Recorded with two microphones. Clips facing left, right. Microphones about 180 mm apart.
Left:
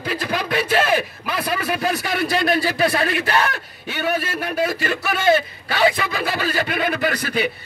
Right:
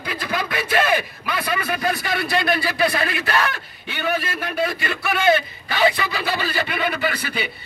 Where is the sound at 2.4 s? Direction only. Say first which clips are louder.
Left 2 dB; 40° left (ahead or behind).